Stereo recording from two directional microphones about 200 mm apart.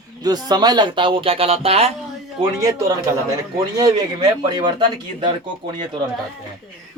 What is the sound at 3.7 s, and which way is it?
Speech, 20° right (ahead or behind).